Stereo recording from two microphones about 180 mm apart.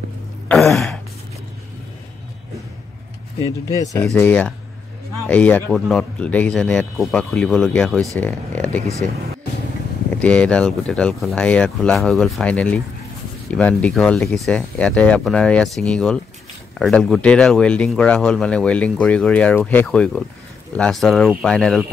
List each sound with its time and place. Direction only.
0.7 s a sound: centre (ahead or behind)
3.6 s speech: 20° left (ahead or behind)
4.1 s speech: 10° left (ahead or behind)